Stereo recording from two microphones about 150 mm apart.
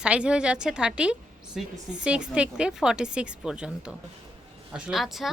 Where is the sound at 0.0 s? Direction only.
5° right (ahead or behind).